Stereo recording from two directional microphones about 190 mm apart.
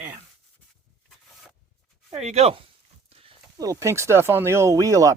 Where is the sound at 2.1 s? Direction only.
35° right (ahead or behind).